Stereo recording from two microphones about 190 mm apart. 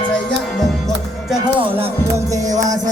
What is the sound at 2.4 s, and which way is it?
Music, 40° right (ahead or behind).